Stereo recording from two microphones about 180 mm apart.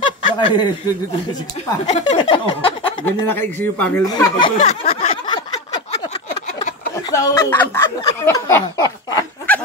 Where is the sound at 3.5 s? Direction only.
10° left (ahead or behind).